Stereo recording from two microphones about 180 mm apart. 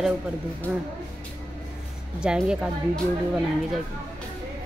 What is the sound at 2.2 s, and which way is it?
Speech, 5° right (ahead or behind).